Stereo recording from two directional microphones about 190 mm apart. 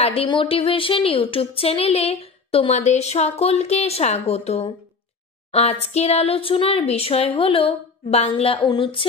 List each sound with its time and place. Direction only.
0.0 s a woman's voice: 30° left (ahead or behind)